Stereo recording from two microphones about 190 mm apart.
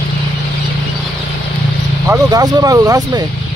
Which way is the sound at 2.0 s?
20° right (ahead or behind).